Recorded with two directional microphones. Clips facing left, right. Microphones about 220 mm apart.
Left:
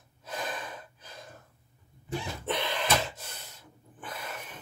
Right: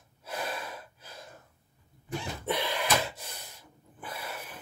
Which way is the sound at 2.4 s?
10° right (ahead or behind).